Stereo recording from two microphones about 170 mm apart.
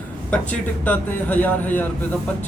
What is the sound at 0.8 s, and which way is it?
Speech, 10° left (ahead or behind).